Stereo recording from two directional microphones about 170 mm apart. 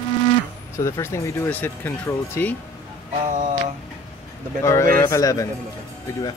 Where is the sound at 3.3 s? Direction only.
50° right (ahead or behind).